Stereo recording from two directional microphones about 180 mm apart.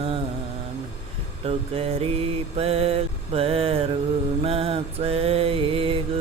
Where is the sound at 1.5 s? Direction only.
35° right (ahead or behind).